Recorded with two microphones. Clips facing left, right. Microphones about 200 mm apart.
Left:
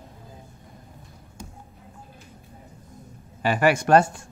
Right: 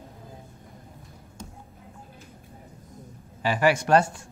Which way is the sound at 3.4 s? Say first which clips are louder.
Left 2 dB; 55° left (ahead or behind).